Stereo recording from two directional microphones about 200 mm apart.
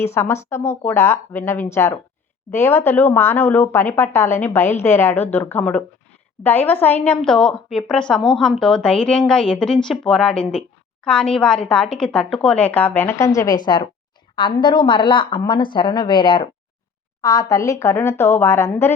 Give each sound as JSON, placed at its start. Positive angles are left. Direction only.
{"t": 0.1, "sound": "a woman's voice", "side_deg": 15}